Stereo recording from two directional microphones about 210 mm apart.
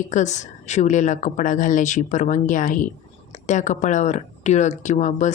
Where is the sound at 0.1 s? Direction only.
35° left (ahead or behind).